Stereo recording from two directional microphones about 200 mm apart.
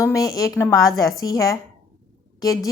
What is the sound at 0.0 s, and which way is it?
A woman's voice, 15° left (ahead or behind).